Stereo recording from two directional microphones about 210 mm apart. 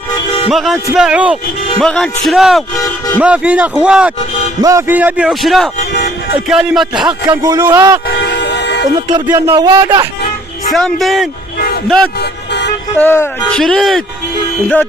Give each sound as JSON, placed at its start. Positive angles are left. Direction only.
{"t": 0.5, "sound": "a man's voice", "side_deg": 0}
{"t": 8.0, "sound": "vehicle", "side_deg": 50}
{"t": 9.3, "sound": "speech", "side_deg": -20}
{"t": 10.7, "sound": "a man's voice", "side_deg": 0}
{"t": 12.2, "sound": "vehicle", "side_deg": 55}
{"t": 13.0, "sound": "a man's voice", "side_deg": 10}